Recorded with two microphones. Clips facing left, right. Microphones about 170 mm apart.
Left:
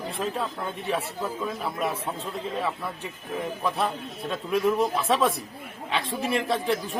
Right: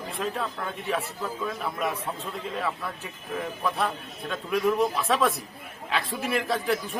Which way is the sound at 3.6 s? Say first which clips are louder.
Even; centre (ahead or behind).